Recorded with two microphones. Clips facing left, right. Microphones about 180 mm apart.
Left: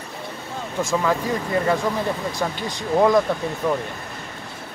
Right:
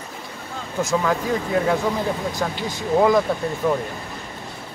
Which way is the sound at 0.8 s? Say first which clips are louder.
Even; centre (ahead or behind).